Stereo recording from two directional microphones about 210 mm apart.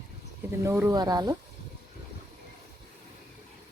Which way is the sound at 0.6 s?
15° right (ahead or behind).